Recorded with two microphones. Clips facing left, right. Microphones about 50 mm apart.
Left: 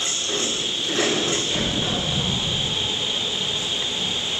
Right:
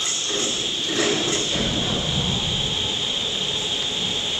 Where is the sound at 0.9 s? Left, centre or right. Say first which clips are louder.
Even; centre.